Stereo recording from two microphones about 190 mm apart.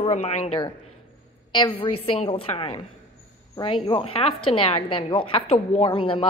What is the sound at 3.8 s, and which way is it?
A woman's voice, 30° left (ahead or behind).